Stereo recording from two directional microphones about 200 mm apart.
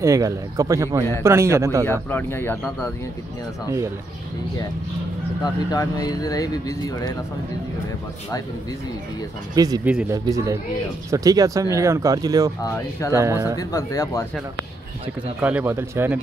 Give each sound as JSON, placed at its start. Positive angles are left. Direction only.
{"t": 0.0, "sound": "speech", "side_deg": -15}
{"t": 1.9, "sound": "speech", "side_deg": 10}
{"t": 5.4, "sound": "speech", "side_deg": 20}
{"t": 9.8, "sound": "speech", "side_deg": -10}
{"t": 12.6, "sound": "speech", "side_deg": 15}
{"t": 13.1, "sound": "speech", "side_deg": -15}
{"t": 13.6, "sound": "speech", "side_deg": 15}
{"t": 15.4, "sound": "speech", "side_deg": -10}